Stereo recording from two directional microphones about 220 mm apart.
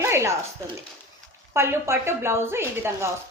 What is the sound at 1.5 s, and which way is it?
A woman's voice, 10° right (ahead or behind).